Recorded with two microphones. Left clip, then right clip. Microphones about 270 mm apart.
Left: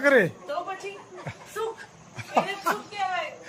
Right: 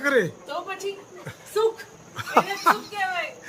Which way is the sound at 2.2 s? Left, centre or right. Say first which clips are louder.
Right 4 dB; centre.